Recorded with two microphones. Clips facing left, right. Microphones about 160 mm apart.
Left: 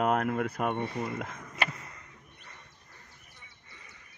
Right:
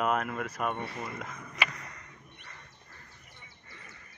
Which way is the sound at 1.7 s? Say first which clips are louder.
Left 2 dB; 25° left (ahead or behind).